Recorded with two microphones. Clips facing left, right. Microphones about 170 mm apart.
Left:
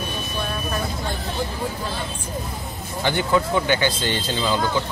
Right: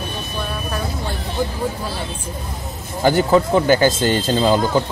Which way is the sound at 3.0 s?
40° right (ahead or behind).